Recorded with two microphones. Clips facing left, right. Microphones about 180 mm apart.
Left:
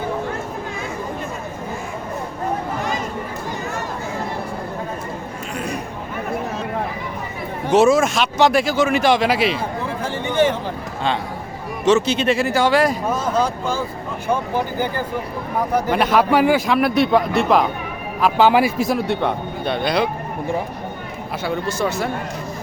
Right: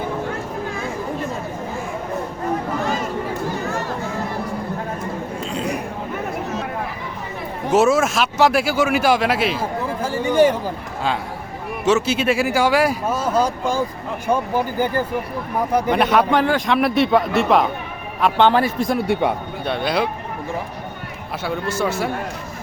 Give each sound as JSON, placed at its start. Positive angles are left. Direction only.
{"t": 5.5, "sound": "a sound", "side_deg": -15}
{"t": 7.7, "sound": "speech", "side_deg": -5}
{"t": 11.9, "sound": "speech", "side_deg": -5}
{"t": 15.9, "sound": "a man's voice", "side_deg": 0}
{"t": 19.0, "sound": "a man's voice", "side_deg": -10}
{"t": 21.8, "sound": "a man's voice", "side_deg": -5}